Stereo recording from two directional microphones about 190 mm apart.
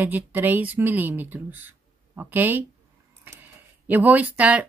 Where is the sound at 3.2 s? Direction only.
10° right (ahead or behind).